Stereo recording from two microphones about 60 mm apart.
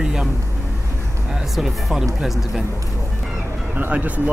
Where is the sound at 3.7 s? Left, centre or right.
Right.